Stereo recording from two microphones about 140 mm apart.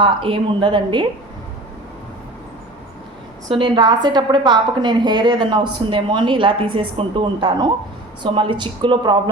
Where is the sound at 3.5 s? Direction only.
35° right (ahead or behind).